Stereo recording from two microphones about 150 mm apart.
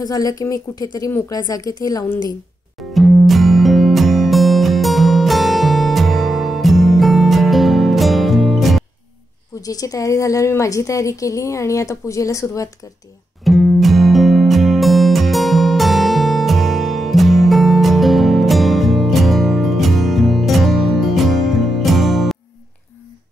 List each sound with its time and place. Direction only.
0.0 s a woman's voice: 25° left (ahead or behind)
2.8 s music: centre (ahead or behind)
9.6 s a woman's voice: 25° left (ahead or behind)
13.4 s music: centre (ahead or behind)